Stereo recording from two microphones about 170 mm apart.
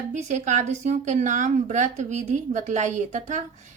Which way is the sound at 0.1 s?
45° right (ahead or behind).